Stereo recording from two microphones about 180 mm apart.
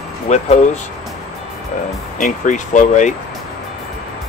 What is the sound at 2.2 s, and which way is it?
Speech, 45° left (ahead or behind).